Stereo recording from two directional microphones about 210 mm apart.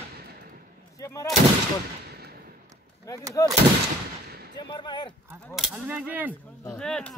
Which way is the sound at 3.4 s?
15° left (ahead or behind).